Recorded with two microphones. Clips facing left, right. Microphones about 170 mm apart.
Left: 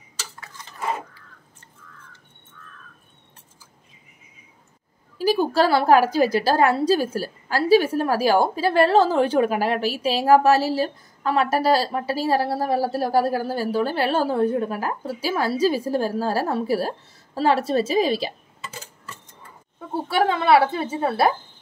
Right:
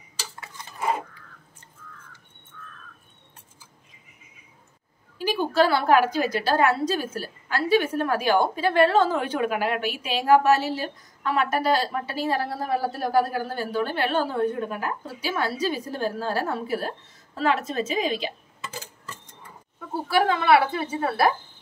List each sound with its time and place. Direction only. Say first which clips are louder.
5.1 s a sound: left 4 dB; 40° left (ahead or behind)
6.1 s a woman's voice: left 4 dB; 35° left (ahead or behind)
19.9 s a woman's voice: left 1 dB; 25° left (ahead or behind)